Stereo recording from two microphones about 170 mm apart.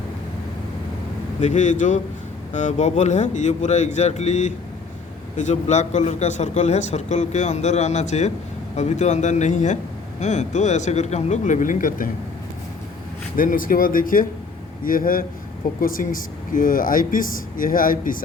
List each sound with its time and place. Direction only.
1.4 s a man's voice: 45° left (ahead or behind)
13.3 s speech: 55° left (ahead or behind)